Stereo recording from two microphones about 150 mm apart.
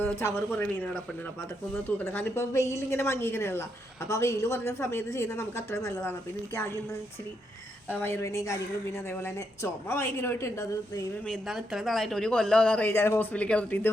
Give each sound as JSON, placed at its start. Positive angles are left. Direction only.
{"t": 0.0, "sound": "a woman's voice", "side_deg": 15}
{"t": 2.0, "sound": "a woman's voice", "side_deg": 15}
{"t": 7.9, "sound": "a woman's voice", "side_deg": 15}
{"t": 11.3, "sound": "a woman's voice", "side_deg": 0}